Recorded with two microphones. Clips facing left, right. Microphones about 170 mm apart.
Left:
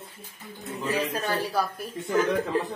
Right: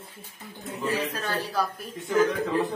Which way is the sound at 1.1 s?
15° left (ahead or behind).